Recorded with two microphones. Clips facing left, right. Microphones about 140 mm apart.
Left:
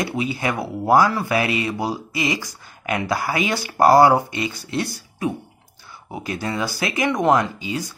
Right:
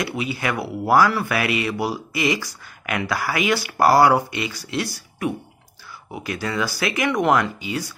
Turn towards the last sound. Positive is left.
turn(degrees=20)  # may be behind; listen again after turning